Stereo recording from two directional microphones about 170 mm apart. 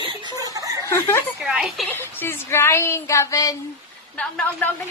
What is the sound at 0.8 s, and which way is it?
Snicker, 15° left (ahead or behind).